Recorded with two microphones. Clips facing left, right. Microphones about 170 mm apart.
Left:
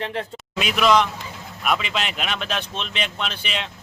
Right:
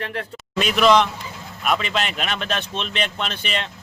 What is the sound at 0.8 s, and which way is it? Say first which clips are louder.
Speech: right 2 dB; 5° left (ahead or behind).